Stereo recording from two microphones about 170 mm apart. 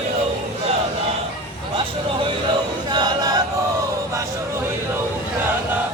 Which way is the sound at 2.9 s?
25° right (ahead or behind).